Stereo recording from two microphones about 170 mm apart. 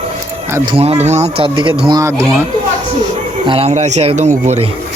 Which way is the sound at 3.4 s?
30° right (ahead or behind).